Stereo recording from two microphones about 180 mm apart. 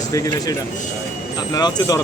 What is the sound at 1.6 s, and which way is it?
Speech, 20° left (ahead or behind).